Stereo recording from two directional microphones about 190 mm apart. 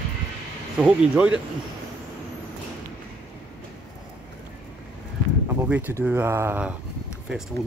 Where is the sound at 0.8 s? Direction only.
5° right (ahead or behind).